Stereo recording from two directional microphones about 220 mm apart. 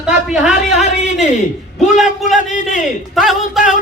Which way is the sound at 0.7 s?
30° left (ahead or behind).